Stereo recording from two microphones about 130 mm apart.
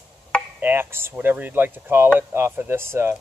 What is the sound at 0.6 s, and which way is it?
Speech, 15° right (ahead or behind).